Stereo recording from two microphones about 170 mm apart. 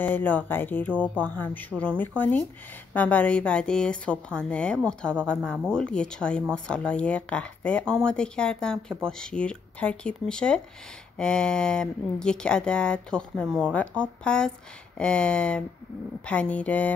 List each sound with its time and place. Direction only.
0.0 s a woman's voice: 10° left (ahead or behind)